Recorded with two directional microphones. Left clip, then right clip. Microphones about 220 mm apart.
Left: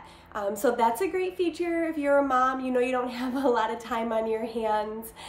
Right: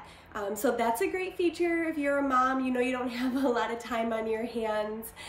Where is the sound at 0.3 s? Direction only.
15° left (ahead or behind).